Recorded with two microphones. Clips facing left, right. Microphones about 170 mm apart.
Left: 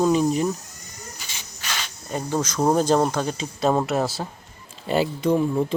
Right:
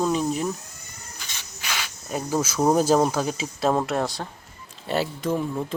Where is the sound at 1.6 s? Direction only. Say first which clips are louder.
Even; 10° right (ahead or behind).